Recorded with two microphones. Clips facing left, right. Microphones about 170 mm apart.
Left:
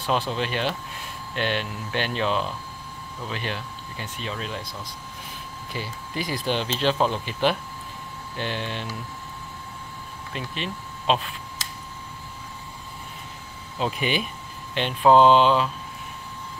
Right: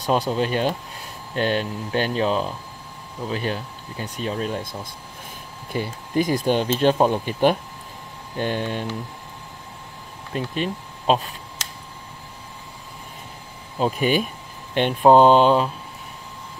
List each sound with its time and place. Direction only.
0.0 s speech: 40° right (ahead or behind)
8.4 s speech: 45° right (ahead or behind)
10.3 s speech: 45° right (ahead or behind)
13.7 s speech: 45° right (ahead or behind)